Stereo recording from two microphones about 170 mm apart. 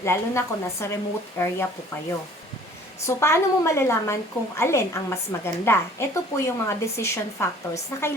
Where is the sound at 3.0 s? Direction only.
15° left (ahead or behind).